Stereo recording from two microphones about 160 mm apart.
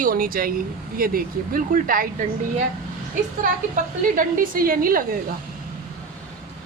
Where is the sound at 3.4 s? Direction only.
55° right (ahead or behind).